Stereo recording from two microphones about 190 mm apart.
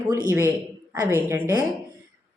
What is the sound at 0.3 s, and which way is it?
A woman's voice, 10° right (ahead or behind).